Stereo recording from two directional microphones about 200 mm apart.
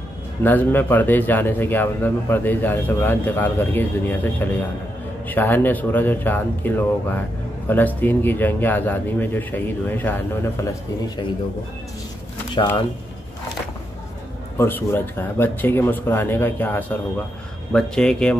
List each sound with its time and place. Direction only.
0.4 s a man's voice: 10° left (ahead or behind)
12.5 s speech: 20° left (ahead or behind)
14.6 s a man's voice: 10° left (ahead or behind)